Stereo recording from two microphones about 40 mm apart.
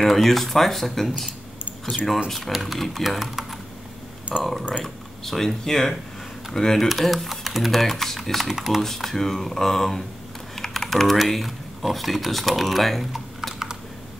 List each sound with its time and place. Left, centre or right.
0.0 s speech: centre
2.2 s speech: centre
6.9 s speech: centre
8.8 s speech: centre